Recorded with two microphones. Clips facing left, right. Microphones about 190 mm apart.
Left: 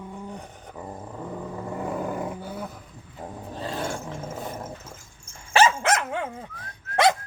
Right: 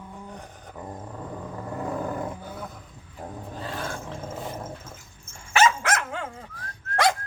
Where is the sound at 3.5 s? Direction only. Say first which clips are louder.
Left 4 dB; 25° left (ahead or behind).